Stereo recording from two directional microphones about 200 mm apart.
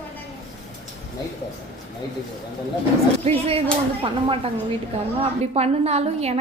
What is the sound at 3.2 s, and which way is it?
A woman's voice, 30° right (ahead or behind).